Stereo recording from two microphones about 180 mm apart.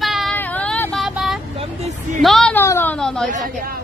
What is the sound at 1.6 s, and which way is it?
Hubbub, 35° right (ahead or behind).